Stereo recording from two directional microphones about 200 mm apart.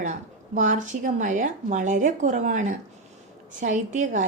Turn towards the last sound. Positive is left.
turn(degrees=-40)  # may be behind; listen again after turning